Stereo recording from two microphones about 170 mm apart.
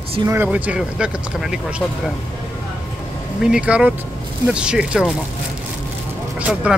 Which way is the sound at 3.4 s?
5° right (ahead or behind).